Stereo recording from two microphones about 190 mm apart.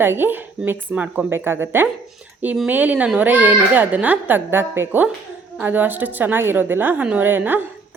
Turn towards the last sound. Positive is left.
turn(degrees=-10)  # may be behind; listen again after turning